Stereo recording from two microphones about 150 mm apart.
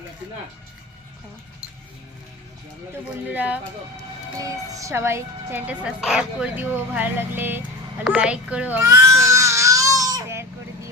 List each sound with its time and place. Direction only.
3.0 s a woman's voice: 10° right (ahead or behind)
4.4 s a woman's voice: 20° right (ahead or behind)
8.0 s baby cry: 5° right (ahead or behind)